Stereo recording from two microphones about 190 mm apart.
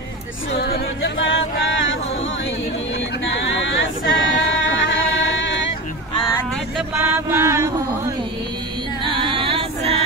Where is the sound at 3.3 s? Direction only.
75° left (ahead or behind).